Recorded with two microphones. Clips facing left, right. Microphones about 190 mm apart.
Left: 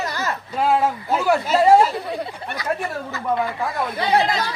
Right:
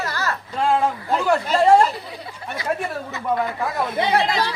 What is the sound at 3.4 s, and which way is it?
Speech, centre (ahead or behind).